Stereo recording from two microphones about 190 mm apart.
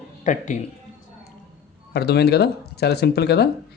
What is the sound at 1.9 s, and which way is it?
Speech, 60° left (ahead or behind).